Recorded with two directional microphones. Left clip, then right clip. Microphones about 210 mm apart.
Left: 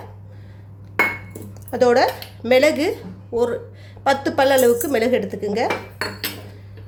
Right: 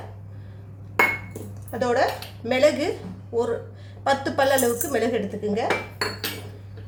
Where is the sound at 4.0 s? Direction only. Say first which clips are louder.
Left 4 dB; 35° left (ahead or behind).